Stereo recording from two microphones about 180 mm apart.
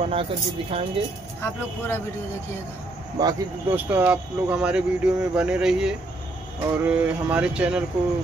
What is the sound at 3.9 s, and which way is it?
Speech, 5° right (ahead or behind).